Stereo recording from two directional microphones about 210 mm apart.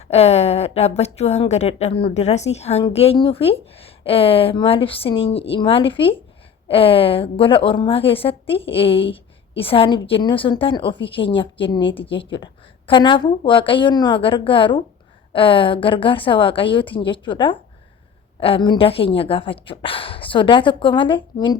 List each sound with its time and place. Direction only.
0.1 s a woman's voice: 30° left (ahead or behind)